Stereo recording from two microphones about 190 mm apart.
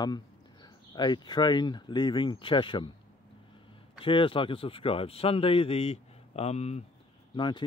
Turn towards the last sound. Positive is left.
turn(degrees=25)  # may be behind; listen again after turning